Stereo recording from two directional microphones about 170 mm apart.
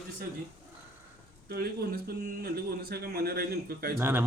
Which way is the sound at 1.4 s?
65° right (ahead or behind).